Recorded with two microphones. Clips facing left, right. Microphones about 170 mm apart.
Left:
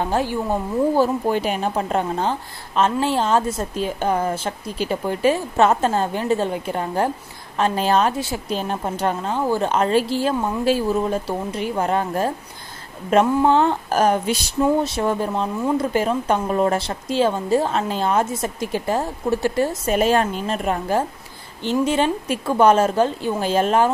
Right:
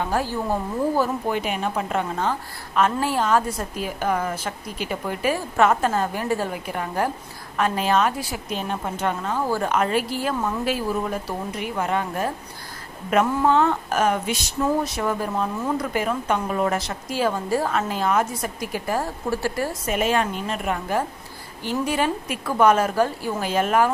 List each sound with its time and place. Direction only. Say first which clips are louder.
0.0 s speech: left 3 dB; 25° left (ahead or behind)